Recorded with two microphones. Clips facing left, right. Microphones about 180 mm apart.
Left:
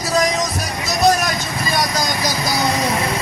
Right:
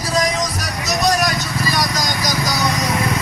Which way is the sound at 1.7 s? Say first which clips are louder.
Left 3 dB; 30° left (ahead or behind).